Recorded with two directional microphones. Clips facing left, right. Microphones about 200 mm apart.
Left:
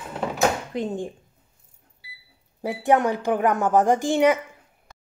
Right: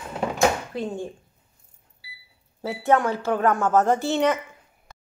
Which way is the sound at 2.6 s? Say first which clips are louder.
Left 1 dB; 15° left (ahead or behind).